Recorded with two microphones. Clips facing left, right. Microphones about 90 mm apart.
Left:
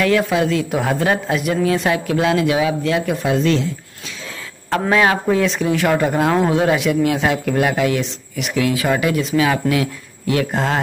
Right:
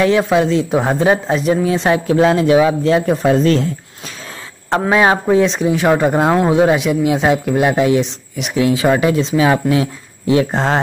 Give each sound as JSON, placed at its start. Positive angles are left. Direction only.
{"t": 0.0, "sound": "speech", "side_deg": -25}
{"t": 4.9, "sound": "speech", "side_deg": -25}